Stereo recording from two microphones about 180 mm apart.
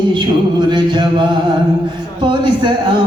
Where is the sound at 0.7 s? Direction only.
25° right (ahead or behind).